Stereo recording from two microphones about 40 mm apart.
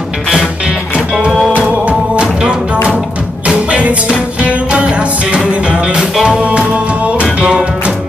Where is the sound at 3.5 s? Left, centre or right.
Right.